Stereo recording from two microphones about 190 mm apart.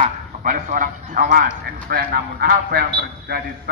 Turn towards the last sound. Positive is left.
turn(degrees=-55)  # may be behind; listen again after turning